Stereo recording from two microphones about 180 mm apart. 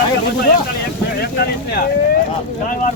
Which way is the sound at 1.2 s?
60° left (ahead or behind).